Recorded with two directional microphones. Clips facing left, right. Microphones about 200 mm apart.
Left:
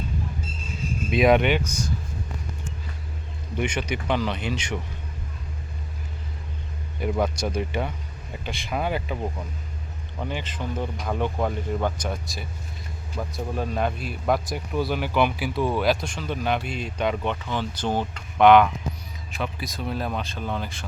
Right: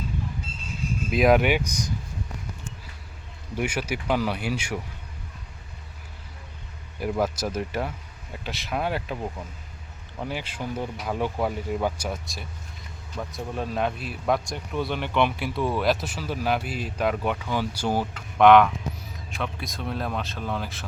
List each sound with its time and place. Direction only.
1.1 s speech: centre (ahead or behind)
3.5 s speech: 5° right (ahead or behind)
7.0 s speech: 5° right (ahead or behind)